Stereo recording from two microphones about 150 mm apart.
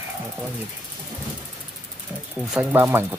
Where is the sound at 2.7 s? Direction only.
15° right (ahead or behind).